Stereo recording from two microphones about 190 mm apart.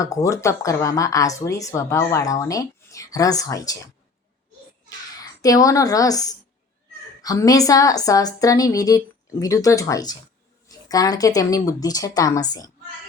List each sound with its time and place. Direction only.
0.0 s speech: 15° left (ahead or behind)
4.9 s a child's voice: 20° left (ahead or behind)